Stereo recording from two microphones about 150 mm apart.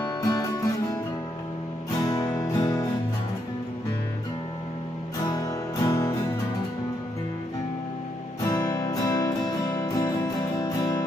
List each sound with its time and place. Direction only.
0.2 s music: 25° left (ahead or behind)
2.0 s music: 25° left (ahead or behind)
5.2 s music: 30° left (ahead or behind)
8.5 s music: 25° left (ahead or behind)